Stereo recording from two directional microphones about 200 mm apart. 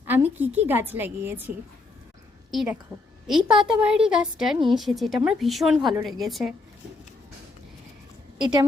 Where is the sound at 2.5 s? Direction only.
Centre (ahead or behind).